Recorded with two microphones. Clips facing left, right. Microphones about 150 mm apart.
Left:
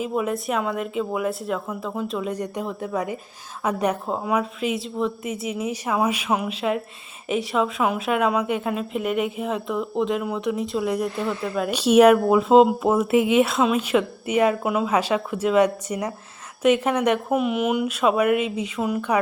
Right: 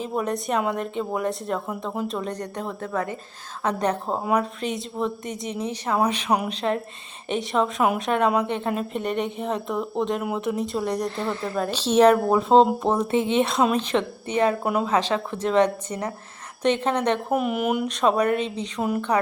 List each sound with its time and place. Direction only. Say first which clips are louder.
0.1 s a woman's voice: left 1 dB; 5° left (ahead or behind)
13.1 s speech: left 5 dB; 30° right (ahead or behind)
13.4 s a woman's voice: left 1 dB; 5° left (ahead or behind)